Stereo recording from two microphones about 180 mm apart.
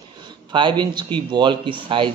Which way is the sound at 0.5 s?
25° right (ahead or behind).